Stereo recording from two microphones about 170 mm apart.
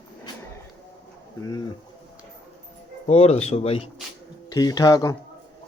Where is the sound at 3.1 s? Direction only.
40° left (ahead or behind).